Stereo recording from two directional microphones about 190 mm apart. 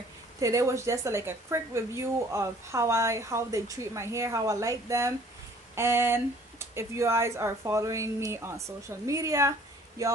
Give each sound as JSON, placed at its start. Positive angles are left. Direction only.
{"t": 0.4, "sound": "a woman's voice", "side_deg": -15}